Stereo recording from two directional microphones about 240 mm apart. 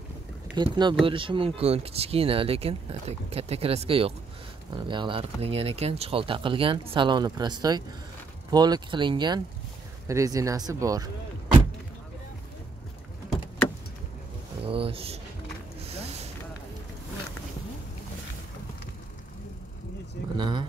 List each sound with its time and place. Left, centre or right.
0.6 s speech: centre
14.6 s speech: right
15.9 s a sound: right
20.3 s speech: centre